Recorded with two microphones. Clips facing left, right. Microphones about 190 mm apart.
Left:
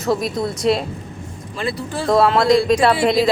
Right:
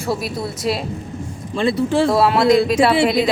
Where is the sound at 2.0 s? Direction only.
5° right (ahead or behind).